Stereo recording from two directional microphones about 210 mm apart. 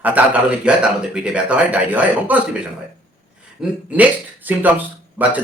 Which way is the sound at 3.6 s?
5° right (ahead or behind).